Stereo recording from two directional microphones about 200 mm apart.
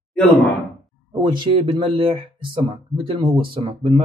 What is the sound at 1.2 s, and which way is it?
Speech, 25° right (ahead or behind).